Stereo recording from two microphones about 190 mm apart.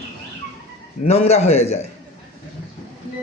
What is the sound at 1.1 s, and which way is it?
Speech, 35° left (ahead or behind).